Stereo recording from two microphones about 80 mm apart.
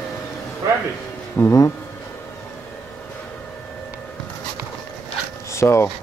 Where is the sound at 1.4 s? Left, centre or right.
Left.